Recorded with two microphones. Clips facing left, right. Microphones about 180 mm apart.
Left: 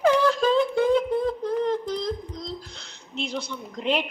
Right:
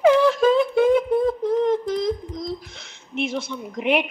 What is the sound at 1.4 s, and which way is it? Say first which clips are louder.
A woman's voice: right 5 dB; 20° right (ahead or behind).